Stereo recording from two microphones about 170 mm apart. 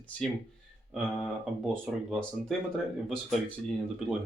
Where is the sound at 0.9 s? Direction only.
Centre (ahead or behind).